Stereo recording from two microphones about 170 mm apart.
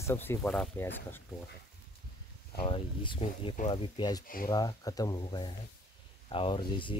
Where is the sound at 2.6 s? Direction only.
30° left (ahead or behind).